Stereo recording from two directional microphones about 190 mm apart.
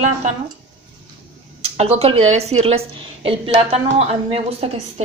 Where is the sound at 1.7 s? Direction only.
35° right (ahead or behind).